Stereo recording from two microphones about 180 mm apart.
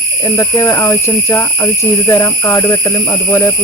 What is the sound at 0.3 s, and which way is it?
Speech, 15° left (ahead or behind).